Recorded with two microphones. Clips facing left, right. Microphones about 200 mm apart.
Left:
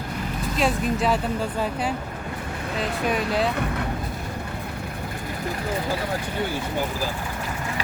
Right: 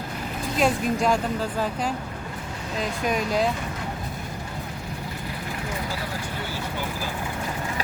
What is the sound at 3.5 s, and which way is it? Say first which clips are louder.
Vehicle: left 5 dB; 60° left (ahead or behind).